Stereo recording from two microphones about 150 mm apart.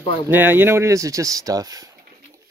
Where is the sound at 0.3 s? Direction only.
15° right (ahead or behind).